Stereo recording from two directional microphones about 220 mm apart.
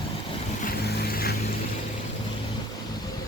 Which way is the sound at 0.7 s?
45° left (ahead or behind).